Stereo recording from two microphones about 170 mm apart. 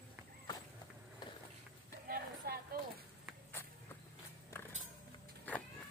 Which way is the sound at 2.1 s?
55° right (ahead or behind).